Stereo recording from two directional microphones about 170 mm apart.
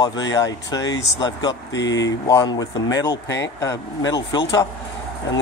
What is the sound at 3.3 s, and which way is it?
Speech, 90° left.